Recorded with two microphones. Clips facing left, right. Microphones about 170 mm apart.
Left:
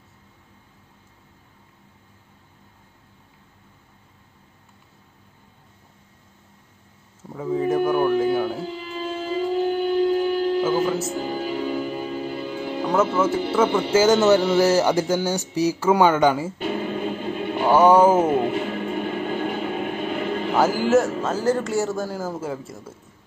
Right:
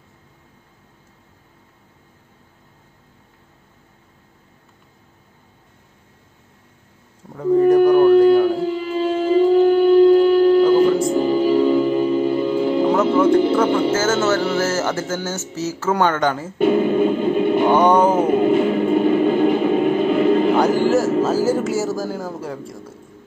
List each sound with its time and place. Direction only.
7.3 s a sound: centre (ahead or behind)
9.1 s music: 60° right (ahead or behind)
10.6 s music: 5° left (ahead or behind)
11.1 s music: 55° right (ahead or behind)
13.6 s a man's voice: 15° left (ahead or behind)
16.5 s music: 55° right (ahead or behind)
17.6 s a man's voice: 5° left (ahead or behind)
18.5 s music: 50° right (ahead or behind)
20.5 s a man's voice: 5° left (ahead or behind)